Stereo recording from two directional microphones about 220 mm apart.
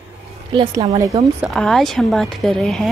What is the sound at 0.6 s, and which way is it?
Speech, 15° right (ahead or behind).